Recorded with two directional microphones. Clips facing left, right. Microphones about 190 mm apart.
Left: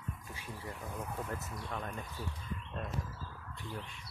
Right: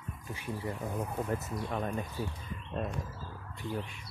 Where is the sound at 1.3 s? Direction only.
15° right (ahead or behind).